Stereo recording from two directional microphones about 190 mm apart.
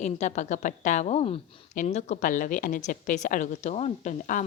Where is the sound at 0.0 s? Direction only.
40° left (ahead or behind).